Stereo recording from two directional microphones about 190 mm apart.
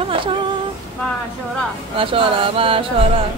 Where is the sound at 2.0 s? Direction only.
30° right (ahead or behind).